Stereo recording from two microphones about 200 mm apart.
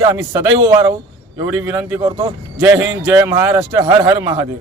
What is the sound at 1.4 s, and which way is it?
Speech, 10° right (ahead or behind).